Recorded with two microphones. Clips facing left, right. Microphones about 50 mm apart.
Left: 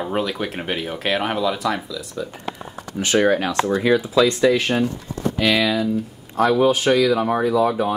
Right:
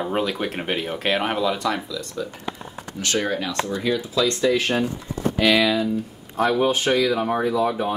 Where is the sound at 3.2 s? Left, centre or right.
Left.